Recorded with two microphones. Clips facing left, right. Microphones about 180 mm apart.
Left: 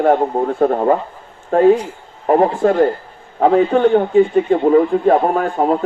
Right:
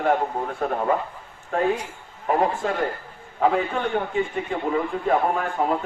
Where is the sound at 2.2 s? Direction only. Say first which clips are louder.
Left 9 dB; 45° left (ahead or behind).